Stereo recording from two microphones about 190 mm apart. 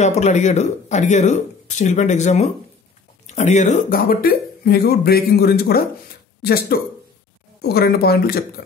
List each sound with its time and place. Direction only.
0.0 s speech: 35° left (ahead or behind); by 8.5 s 55° left (ahead or behind)